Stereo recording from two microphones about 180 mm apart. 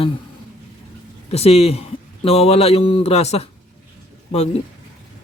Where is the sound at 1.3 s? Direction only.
35° left (ahead or behind).